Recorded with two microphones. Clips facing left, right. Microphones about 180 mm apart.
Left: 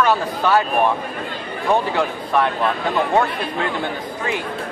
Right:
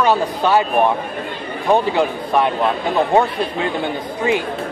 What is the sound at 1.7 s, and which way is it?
Speech, 15° right (ahead or behind).